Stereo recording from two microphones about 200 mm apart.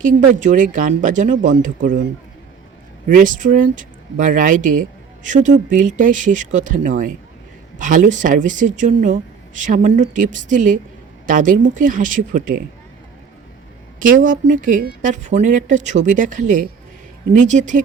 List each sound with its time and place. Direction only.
0.0 s speech: 40° right (ahead or behind)
3.1 s speech: 40° right (ahead or behind)
14.0 s speech: 40° right (ahead or behind)